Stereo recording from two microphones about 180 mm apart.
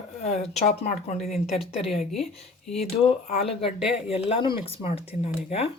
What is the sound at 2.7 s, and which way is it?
Speech, 35° left (ahead or behind).